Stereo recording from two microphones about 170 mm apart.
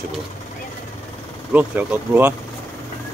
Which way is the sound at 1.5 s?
10° right (ahead or behind).